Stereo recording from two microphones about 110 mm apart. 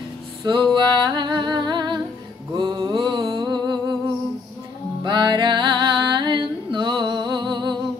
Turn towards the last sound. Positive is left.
turn(degrees=-45)  # may be behind; listen again after turning